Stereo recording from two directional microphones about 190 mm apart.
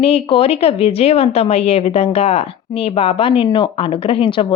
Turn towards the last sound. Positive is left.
turn(degrees=25)  # may be behind; listen again after turning